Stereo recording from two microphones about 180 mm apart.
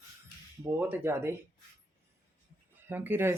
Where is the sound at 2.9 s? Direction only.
10° right (ahead or behind).